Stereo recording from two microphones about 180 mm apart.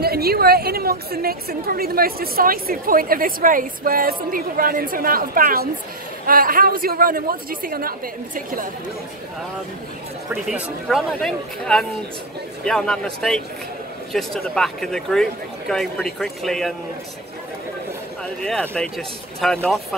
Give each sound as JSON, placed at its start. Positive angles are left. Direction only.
{"t": 0.0, "sound": "a woman's voice", "side_deg": -60}
{"t": 10.3, "sound": "speech", "side_deg": -5}
{"t": 18.4, "sound": "speech", "side_deg": 5}